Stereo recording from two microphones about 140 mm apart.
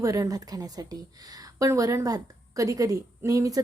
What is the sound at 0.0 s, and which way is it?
A woman's voice, 25° right (ahead or behind).